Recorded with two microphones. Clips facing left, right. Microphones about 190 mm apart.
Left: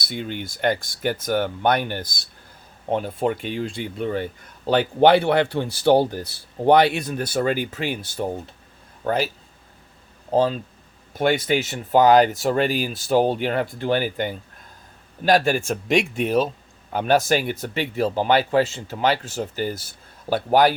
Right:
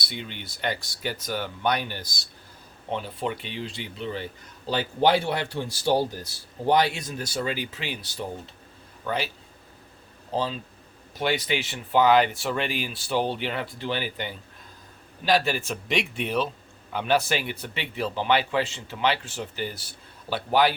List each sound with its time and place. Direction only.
0.0 s a man's voice: 45° left (ahead or behind)
10.3 s speech: 50° left (ahead or behind)